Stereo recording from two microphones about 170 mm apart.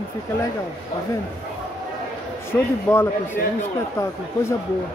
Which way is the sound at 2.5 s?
15° left (ahead or behind).